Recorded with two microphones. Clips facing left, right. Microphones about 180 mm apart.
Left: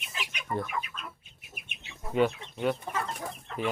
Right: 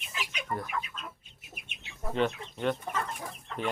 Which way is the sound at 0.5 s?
Centre (ahead or behind).